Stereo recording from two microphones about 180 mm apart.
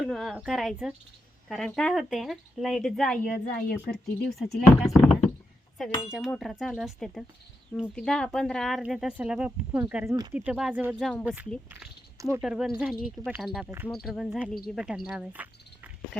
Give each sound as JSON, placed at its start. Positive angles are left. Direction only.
{"t": 0.0, "sound": "speech", "side_deg": 0}
{"t": 11.7, "sound": "a sound", "side_deg": -15}
{"t": 12.4, "sound": "speech", "side_deg": 0}
{"t": 14.8, "sound": "cricket", "side_deg": -5}